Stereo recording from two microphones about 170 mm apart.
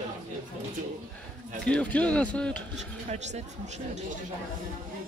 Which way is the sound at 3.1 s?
40° right (ahead or behind).